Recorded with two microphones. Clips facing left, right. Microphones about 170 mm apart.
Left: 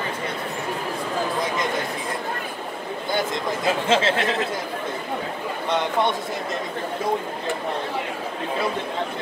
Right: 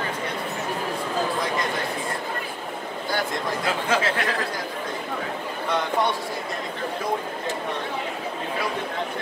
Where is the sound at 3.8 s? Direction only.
25° left (ahead or behind).